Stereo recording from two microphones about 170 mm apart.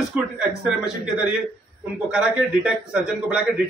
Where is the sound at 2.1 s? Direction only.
5° right (ahead or behind).